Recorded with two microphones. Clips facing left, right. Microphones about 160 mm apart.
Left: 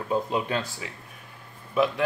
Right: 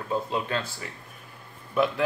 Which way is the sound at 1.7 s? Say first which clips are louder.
Left 1 dB; centre (ahead or behind).